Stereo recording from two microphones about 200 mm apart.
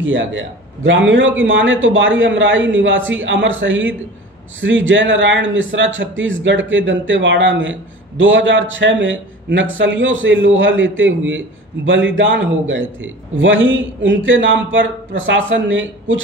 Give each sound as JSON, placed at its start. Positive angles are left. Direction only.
{"t": 0.0, "sound": "a man's voice", "side_deg": -70}